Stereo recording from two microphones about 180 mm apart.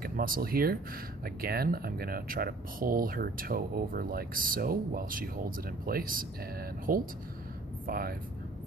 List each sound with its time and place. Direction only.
0.0 s speech: 55° right (ahead or behind)